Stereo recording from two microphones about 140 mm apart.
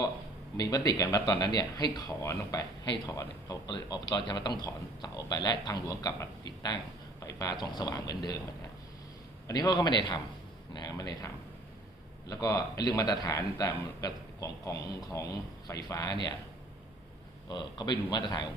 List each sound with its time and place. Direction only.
0.5 s speech: 25° left (ahead or behind)
9.5 s a man's voice: 30° left (ahead or behind)
12.3 s speech: 25° left (ahead or behind)
17.5 s a man's voice: 30° left (ahead or behind)